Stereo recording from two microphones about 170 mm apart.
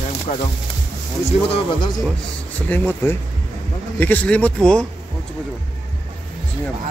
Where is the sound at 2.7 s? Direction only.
10° left (ahead or behind).